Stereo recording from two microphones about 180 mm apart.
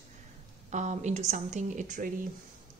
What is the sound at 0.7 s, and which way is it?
Speech, 40° right (ahead or behind).